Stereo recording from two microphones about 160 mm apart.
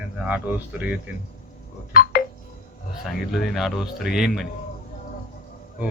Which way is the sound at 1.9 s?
65° left (ahead or behind).